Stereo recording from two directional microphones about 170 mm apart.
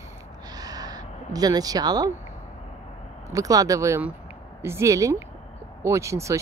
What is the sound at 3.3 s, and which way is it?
Speech, 20° right (ahead or behind).